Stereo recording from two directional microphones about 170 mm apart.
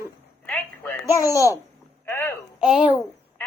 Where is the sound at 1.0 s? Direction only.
20° left (ahead or behind).